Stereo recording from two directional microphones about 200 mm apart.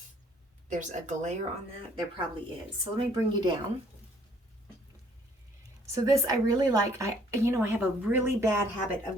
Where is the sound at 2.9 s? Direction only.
25° right (ahead or behind).